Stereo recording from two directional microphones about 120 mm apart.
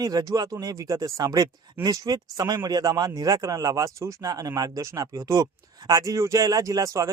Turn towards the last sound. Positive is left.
turn(degrees=-25)  # may be behind; listen again after turning